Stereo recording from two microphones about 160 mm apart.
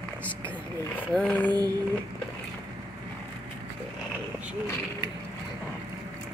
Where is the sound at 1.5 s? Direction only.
25° right (ahead or behind).